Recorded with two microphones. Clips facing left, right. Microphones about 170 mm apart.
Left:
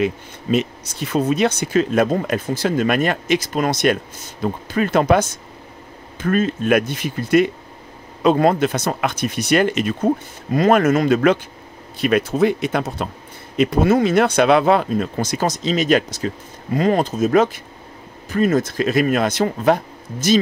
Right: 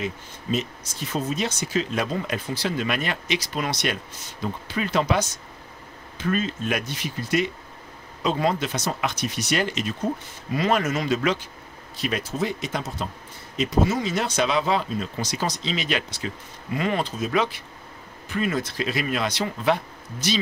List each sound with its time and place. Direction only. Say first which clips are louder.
0.0 s speech: left 10 dB; 65° left (ahead or behind); by 20.3 s 45° left (ahead or behind)